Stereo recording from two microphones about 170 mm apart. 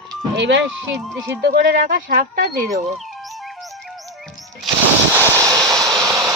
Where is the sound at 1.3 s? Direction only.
75° right (ahead or behind).